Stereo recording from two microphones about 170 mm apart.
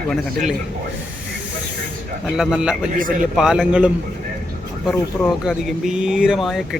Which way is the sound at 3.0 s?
55° right (ahead or behind).